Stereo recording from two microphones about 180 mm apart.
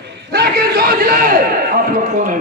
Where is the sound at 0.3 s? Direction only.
65° right (ahead or behind).